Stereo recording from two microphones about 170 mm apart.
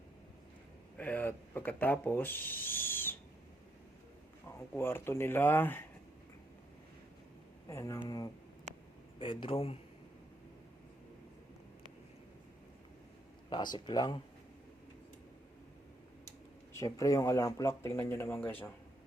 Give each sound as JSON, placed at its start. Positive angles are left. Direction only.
{"t": 0.9, "sound": "speech", "side_deg": 10}
{"t": 4.4, "sound": "speech", "side_deg": 15}
{"t": 7.7, "sound": "speech", "side_deg": 15}
{"t": 13.7, "sound": "speech", "side_deg": 25}
{"t": 16.7, "sound": "speech", "side_deg": 20}